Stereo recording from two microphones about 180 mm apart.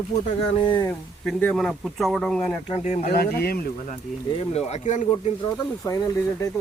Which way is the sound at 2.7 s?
40° left (ahead or behind).